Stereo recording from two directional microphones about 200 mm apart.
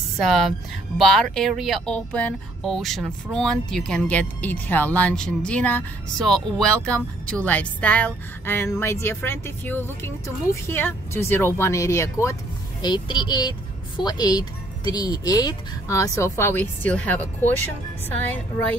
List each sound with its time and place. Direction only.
0.2 s a woman's voice: centre (ahead or behind)